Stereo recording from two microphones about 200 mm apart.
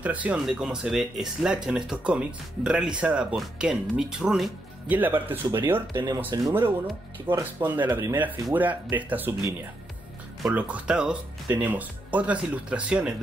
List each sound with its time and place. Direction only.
0.0 s speech: 5° right (ahead or behind)